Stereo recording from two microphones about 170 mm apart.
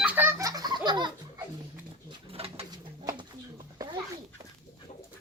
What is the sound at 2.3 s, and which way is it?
Pigeon, 35° right (ahead or behind).